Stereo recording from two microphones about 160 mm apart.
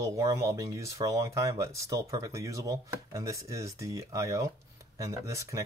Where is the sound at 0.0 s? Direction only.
20° right (ahead or behind).